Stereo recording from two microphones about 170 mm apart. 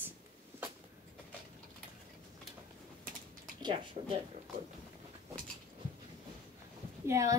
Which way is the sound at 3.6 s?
35° right (ahead or behind).